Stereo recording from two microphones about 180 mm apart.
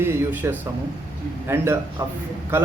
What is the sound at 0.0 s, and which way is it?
Speech, 15° right (ahead or behind).